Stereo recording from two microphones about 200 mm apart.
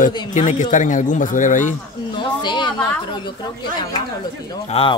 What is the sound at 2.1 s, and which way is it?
A woman's voice, 25° left (ahead or behind).